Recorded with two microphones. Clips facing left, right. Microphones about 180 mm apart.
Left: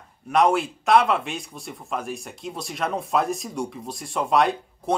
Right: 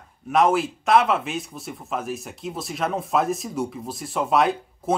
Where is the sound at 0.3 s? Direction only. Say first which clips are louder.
Right 1 dB; centre (ahead or behind).